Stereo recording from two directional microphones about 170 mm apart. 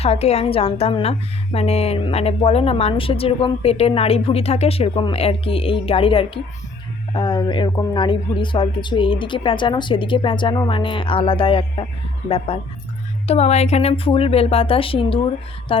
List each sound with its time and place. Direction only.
0.0 s a woman's voice: 35° left (ahead or behind)